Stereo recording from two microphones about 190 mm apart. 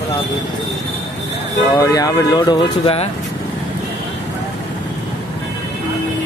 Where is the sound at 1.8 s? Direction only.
20° left (ahead or behind).